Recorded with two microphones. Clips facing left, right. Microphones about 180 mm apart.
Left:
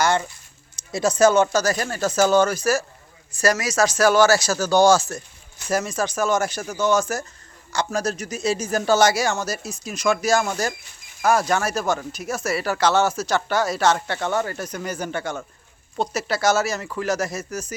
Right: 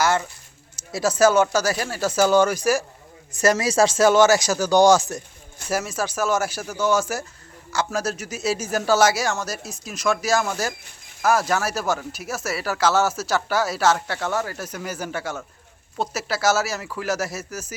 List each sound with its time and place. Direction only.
0.0 s speech: 5° right (ahead or behind)
3.3 s speech: 25° right (ahead or behind)
5.6 s speech: 5° right (ahead or behind)